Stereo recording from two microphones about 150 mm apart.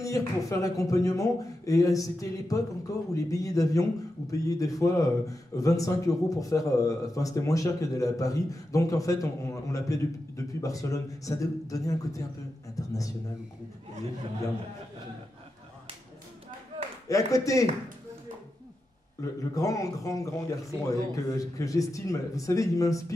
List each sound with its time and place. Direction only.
0.0 s speech: 20° left (ahead or behind)
17.1 s speech: 20° left (ahead or behind)
19.2 s speech: 20° left (ahead or behind)